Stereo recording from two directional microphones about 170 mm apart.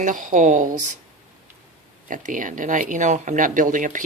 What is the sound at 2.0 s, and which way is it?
Speech, 50° right (ahead or behind).